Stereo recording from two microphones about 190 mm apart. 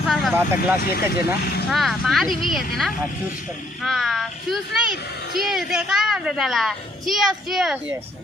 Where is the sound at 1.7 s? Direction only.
Centre (ahead or behind).